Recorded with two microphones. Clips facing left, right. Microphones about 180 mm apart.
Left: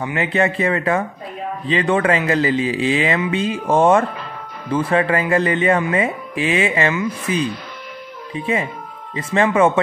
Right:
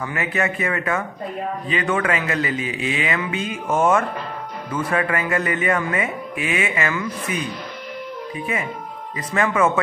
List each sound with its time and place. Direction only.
0.0 s speech: 25° left (ahead or behind)
9.1 s speech: 25° left (ahead or behind)